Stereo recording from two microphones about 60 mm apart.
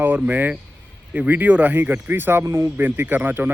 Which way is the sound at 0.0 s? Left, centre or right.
Right.